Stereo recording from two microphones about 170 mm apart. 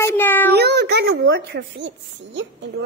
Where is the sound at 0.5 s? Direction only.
75° right (ahead or behind); by 2.5 s 90° right.